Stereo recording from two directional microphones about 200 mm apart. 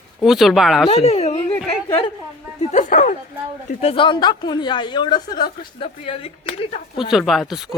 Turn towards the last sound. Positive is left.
turn(degrees=0)  # may be behind; listen again after turning